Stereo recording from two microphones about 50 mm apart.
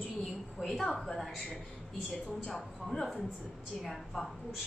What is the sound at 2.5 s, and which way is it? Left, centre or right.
Speech, centre.